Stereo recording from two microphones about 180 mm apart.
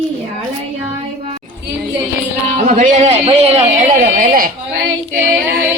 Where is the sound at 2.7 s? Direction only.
40° right (ahead or behind).